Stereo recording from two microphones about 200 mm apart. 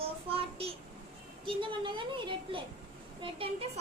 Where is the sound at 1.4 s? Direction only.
25° right (ahead or behind).